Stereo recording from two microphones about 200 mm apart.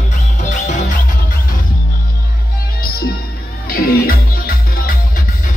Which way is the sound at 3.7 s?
45° left (ahead or behind).